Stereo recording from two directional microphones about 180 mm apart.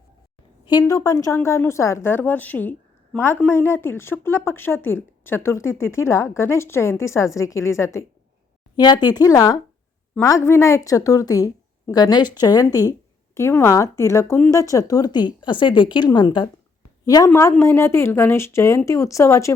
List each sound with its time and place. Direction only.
0.7 s a woman's voice: 20° left (ahead or behind)